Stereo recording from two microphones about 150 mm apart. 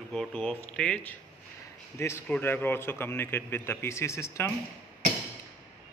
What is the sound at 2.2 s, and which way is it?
A man's voice, 10° left (ahead or behind).